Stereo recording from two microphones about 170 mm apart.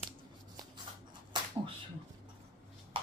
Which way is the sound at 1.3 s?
25° right (ahead or behind).